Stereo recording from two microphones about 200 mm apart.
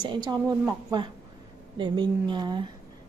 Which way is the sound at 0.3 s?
15° right (ahead or behind).